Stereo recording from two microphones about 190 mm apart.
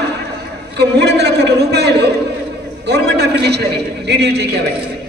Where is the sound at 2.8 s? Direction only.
60° right (ahead or behind).